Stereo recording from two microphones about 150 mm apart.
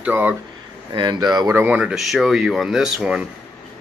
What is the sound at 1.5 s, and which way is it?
Speech, 10° right (ahead or behind).